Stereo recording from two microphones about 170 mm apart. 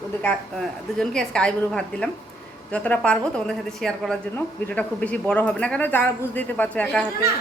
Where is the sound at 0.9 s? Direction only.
5° left (ahead or behind).